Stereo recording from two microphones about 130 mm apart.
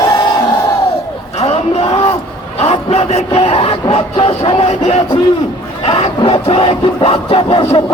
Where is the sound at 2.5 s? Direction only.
55° left (ahead or behind).